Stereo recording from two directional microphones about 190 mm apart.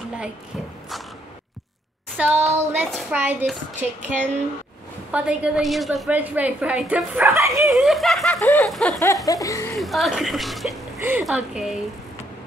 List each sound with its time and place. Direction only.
2.1 s a woman's voice: 10° right (ahead or behind)
7.6 s snicker: centre (ahead or behind)
9.0 s laughter: 15° left (ahead or behind)
9.8 s snicker: centre (ahead or behind)
11.0 s speech: 10° right (ahead or behind)
11.2 s snicker: 5° right (ahead or behind)